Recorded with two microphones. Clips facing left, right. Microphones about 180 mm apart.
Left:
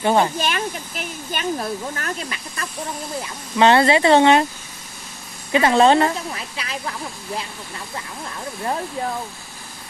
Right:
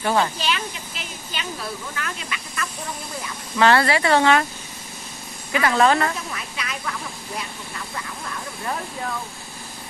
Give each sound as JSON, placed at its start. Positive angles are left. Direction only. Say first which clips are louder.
{"t": 0.0, "sound": "speech", "louder": "left 4 dB", "side_deg": 20}
{"t": 0.4, "sound": "speech", "louder": "left 3 dB", "side_deg": 50}
{"t": 3.2, "sound": "speech", "louder": "left 3 dB", "side_deg": 20}
{"t": 5.5, "sound": "speech", "louder": "left 4 dB", "side_deg": 25}